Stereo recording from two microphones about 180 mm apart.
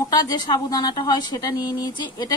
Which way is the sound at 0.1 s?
25° left (ahead or behind).